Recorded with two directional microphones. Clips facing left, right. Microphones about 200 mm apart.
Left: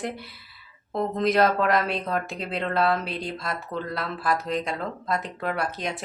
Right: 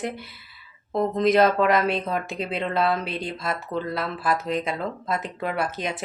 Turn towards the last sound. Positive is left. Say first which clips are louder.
# right 1 dB
turn(degrees=0)  # may be behind; listen again after turning